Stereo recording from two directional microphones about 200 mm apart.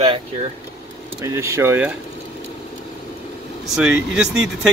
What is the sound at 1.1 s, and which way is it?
Speech, 15° right (ahead or behind).